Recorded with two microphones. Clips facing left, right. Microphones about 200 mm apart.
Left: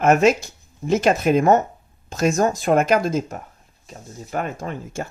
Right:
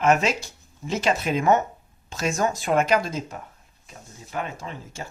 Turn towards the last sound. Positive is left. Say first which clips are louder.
# left 7 dB
turn(degrees=50)  # may be behind; listen again after turning